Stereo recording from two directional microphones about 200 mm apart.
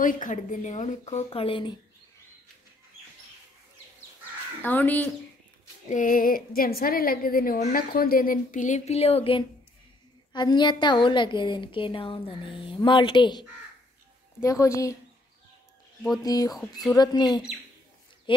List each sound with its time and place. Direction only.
0.0 s a woman's voice: 40° left (ahead or behind); by 1.8 s 25° left (ahead or behind)
4.6 s a woman's voice: 10° left (ahead or behind)
5.9 s a woman's voice: 40° left (ahead or behind); by 15.0 s 15° left (ahead or behind)
16.2 s a woman's voice: 20° left (ahead or behind)